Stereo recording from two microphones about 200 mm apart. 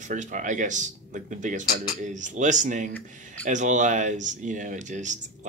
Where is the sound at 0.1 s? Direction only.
40° right (ahead or behind).